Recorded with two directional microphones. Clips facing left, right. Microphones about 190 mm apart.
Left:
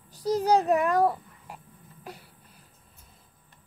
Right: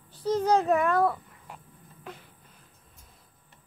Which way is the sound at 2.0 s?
35° left (ahead or behind).